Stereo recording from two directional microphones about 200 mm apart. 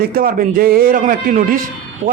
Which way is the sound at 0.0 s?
45° right (ahead or behind).